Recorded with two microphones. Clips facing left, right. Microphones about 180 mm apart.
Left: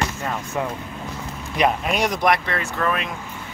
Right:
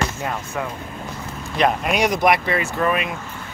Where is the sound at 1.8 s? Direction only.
Centre (ahead or behind).